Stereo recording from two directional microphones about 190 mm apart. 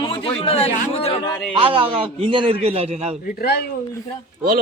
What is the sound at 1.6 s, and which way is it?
A man's voice, 25° right (ahead or behind).